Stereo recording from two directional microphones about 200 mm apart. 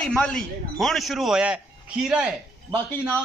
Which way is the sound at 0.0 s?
5° left (ahead or behind).